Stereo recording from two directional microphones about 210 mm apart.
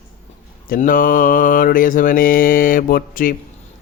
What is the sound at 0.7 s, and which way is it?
A man's voice, 40° left (ahead or behind).